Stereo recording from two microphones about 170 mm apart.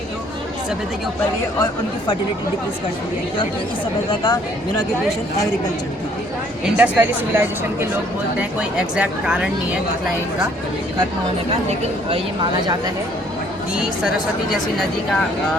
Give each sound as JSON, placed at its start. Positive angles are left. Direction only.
{"t": 4.1, "sound": "speech", "side_deg": 25}
{"t": 6.7, "sound": "speech", "side_deg": -10}
{"t": 12.1, "sound": "speech", "side_deg": -30}